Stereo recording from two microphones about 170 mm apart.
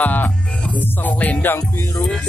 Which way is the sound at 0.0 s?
10° left (ahead or behind).